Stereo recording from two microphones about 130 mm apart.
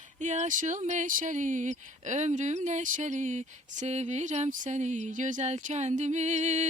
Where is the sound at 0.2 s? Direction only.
65° right (ahead or behind).